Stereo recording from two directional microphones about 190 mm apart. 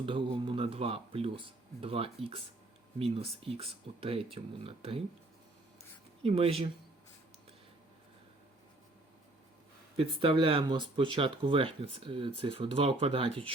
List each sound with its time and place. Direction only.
0.0 s speech: 25° right (ahead or behind)
6.2 s speech: 30° right (ahead or behind)
10.0 s speech: 25° right (ahead or behind)